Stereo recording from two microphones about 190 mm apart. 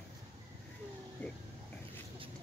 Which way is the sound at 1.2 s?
5° left (ahead or behind).